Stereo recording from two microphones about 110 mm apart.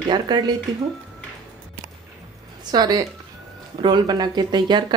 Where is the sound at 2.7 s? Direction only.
35° right (ahead or behind).